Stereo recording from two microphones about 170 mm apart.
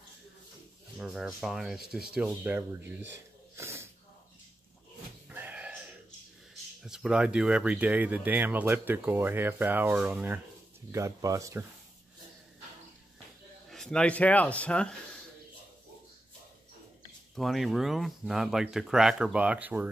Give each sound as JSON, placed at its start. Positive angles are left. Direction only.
{"t": 0.9, "sound": "speech", "side_deg": -5}
{"t": 3.5, "sound": "sneeze", "side_deg": -15}
{"t": 5.3, "sound": "music", "side_deg": -10}
{"t": 6.8, "sound": "speech", "side_deg": -5}
{"t": 13.7, "sound": "speech", "side_deg": 5}
{"t": 17.4, "sound": "speech", "side_deg": 0}